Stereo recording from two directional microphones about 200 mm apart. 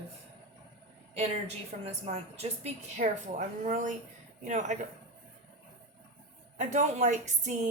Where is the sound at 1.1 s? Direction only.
30° right (ahead or behind).